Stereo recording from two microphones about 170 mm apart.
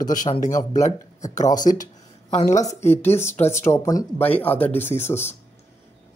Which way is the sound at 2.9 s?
15° left (ahead or behind).